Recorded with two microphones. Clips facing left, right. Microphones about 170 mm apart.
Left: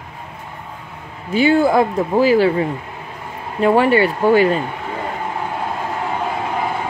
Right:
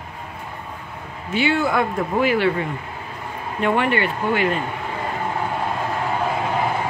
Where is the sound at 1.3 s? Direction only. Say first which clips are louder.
Left 6 dB; 40° left (ahead or behind).